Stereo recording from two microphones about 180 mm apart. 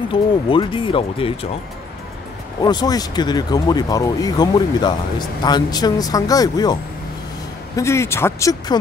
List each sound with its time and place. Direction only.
0.1 s speech: 30° left (ahead or behind)
2.6 s speech: 20° left (ahead or behind)